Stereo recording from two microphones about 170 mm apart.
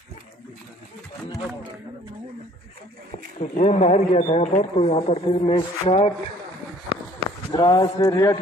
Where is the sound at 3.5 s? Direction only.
40° left (ahead or behind).